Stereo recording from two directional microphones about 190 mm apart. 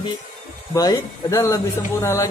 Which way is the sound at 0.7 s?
20° left (ahead or behind).